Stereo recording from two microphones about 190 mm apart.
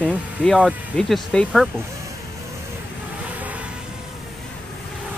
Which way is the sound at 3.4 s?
10° right (ahead or behind).